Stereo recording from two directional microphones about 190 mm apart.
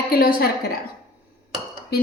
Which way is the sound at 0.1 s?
50° left (ahead or behind).